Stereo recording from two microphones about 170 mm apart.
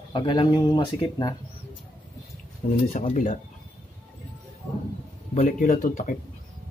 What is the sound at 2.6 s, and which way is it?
Speech, 55° left (ahead or behind).